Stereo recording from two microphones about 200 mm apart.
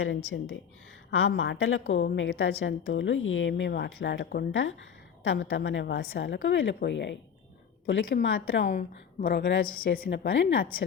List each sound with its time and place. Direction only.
0.0 s a woman's voice: 90° left
1.9 s a woman's voice: 65° left (ahead or behind)
8.6 s a woman's voice: 40° left (ahead or behind)
9.3 s a woman's voice: 65° left (ahead or behind)
9.7 s a woman's voice: 45° left (ahead or behind)
10.2 s a woman's voice: 70° left (ahead or behind)